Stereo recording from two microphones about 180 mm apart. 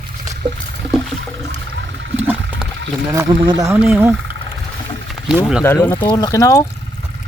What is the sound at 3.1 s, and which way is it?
Speech, 20° right (ahead or behind).